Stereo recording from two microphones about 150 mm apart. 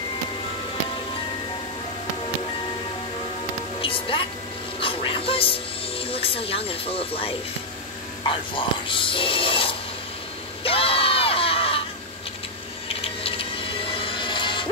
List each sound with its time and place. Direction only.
3.8 s music: 35° left (ahead or behind)
4.7 s speech: 35° left (ahead or behind)
10.6 s crowd: 40° left (ahead or behind)
12.8 s a sound: 40° left (ahead or behind)
14.0 s music: 35° left (ahead or behind)